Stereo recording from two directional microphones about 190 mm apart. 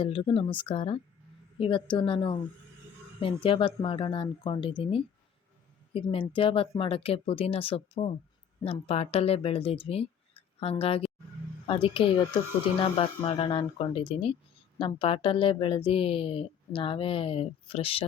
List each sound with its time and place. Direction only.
0.0 s speech: 25° left (ahead or behind)